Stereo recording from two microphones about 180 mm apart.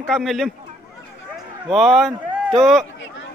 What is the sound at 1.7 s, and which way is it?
A man's voice, centre (ahead or behind).